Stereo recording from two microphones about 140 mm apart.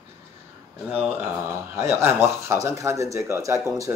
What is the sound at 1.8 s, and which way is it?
Speech, 20° right (ahead or behind).